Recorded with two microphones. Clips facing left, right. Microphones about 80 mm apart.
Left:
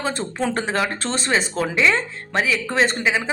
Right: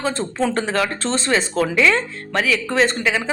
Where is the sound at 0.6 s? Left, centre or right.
Left.